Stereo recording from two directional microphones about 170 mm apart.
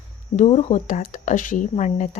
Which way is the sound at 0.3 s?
40° left (ahead or behind).